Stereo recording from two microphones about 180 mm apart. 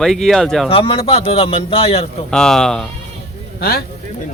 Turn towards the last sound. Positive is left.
turn(degrees=60)  # may be behind; listen again after turning